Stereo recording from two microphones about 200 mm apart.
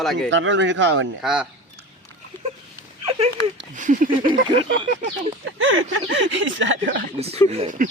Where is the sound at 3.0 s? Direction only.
30° right (ahead or behind).